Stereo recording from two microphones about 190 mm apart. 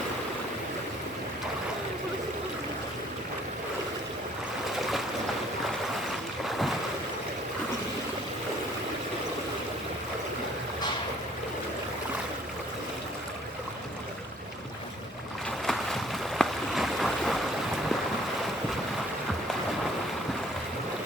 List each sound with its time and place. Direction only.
4.8 s boat: centre (ahead or behind)
15.4 s boat: centre (ahead or behind)